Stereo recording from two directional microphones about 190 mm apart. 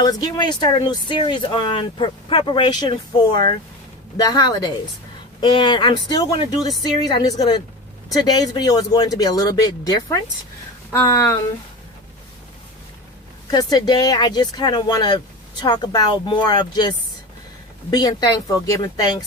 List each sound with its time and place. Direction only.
0.0 s speech: 20° left (ahead or behind)
13.5 s speech: 20° left (ahead or behind)
17.9 s speech: 20° left (ahead or behind)